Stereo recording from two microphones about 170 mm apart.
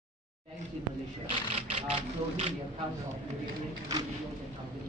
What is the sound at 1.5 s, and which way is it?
Speech, 35° right (ahead or behind).